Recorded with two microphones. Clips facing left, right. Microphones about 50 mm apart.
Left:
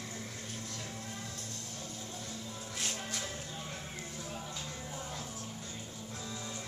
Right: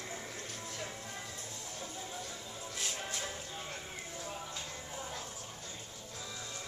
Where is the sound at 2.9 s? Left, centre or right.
Centre.